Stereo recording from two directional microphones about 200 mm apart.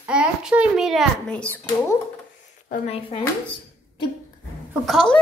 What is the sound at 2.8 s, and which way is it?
Speech, 30° left (ahead or behind).